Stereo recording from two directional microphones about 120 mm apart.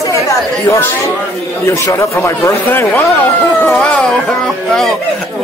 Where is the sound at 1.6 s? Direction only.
20° left (ahead or behind).